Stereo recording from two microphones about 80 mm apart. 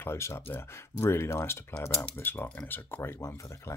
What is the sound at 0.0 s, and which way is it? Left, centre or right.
Speech, left.